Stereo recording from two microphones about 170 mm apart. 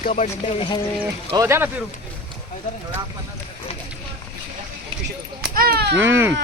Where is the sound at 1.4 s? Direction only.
15° right (ahead or behind).